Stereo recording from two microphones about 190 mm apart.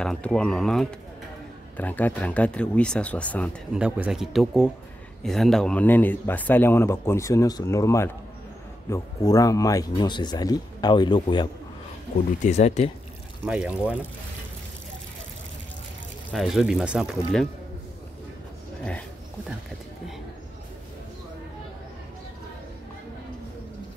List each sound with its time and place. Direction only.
0.0 s speech: 5° left (ahead or behind)
3.7 s speech: 5° right (ahead or behind); by 11.4 s 25° left (ahead or behind)
12.4 s speech: 35° left (ahead or behind)
13.4 s speech: 5° right (ahead or behind)
16.3 s speech: centre (ahead or behind)